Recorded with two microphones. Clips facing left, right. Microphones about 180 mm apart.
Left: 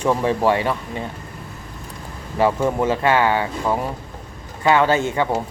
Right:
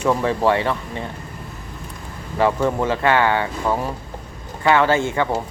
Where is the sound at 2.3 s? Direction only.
15° left (ahead or behind).